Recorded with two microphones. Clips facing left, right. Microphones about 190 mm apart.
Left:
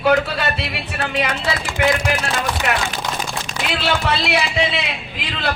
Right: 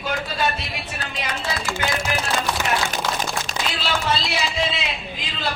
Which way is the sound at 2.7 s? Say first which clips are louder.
Left 1 dB; 70° left (ahead or behind).